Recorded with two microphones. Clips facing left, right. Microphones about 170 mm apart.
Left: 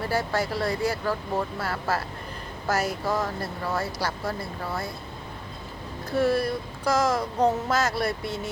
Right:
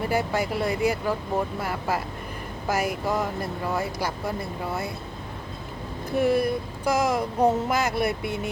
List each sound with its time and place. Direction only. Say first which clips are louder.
0.0 s speech: right 1 dB; 15° right (ahead or behind)
6.1 s speech: right 1 dB; 15° right (ahead or behind)